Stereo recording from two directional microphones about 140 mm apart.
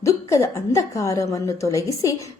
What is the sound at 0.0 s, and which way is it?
A woman's voice, 20° left (ahead or behind).